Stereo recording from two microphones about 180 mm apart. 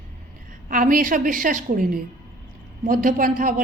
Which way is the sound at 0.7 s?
50° right (ahead or behind).